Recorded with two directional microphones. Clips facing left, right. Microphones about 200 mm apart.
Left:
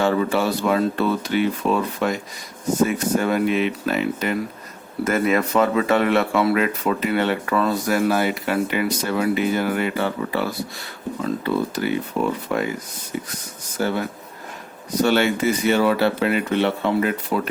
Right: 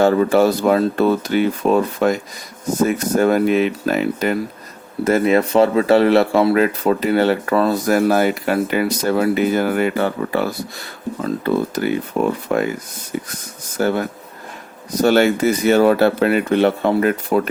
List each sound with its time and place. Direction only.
0.0 s speech: 45° right (ahead or behind)
3.2 s speech: 45° right (ahead or behind)
5.0 s speech: 30° right (ahead or behind)
12.5 s speech: 50° right (ahead or behind)
13.7 s speech: 50° right (ahead or behind)